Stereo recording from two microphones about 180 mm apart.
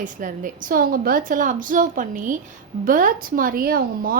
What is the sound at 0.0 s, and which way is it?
A woman's voice, 45° right (ahead or behind).